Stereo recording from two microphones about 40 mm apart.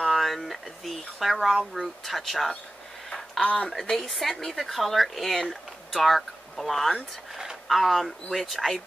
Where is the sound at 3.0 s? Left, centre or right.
Centre.